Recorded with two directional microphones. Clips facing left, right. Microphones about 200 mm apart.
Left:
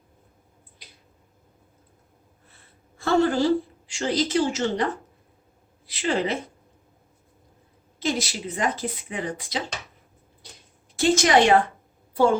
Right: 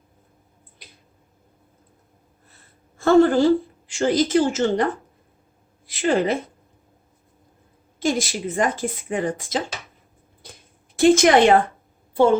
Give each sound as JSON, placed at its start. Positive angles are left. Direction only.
{"t": 3.0, "sound": "a woman's voice", "side_deg": -50}
{"t": 5.8, "sound": "a sound", "side_deg": -50}
{"t": 7.9, "sound": "speech", "side_deg": -50}
{"t": 10.9, "sound": "speech", "side_deg": -55}
{"t": 12.1, "sound": "a woman's voice", "side_deg": -25}